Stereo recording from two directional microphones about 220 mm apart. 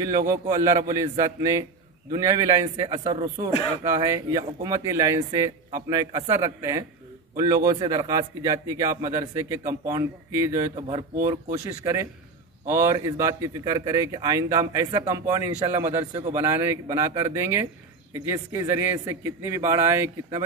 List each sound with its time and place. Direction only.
0.3 s a man's voice: 15° right (ahead or behind)